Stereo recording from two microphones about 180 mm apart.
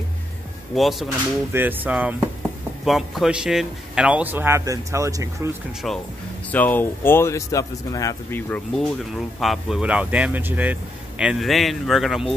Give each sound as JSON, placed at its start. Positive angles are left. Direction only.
{"t": 0.7, "sound": "speech", "side_deg": 0}
{"t": 5.8, "sound": "speech", "side_deg": 0}